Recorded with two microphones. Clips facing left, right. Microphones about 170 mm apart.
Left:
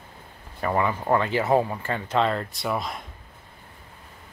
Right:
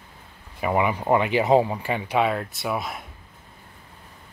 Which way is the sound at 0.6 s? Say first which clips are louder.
Right 2 dB; 15° right (ahead or behind).